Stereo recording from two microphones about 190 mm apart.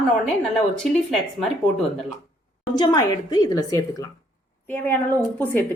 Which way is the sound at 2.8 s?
20° left (ahead or behind).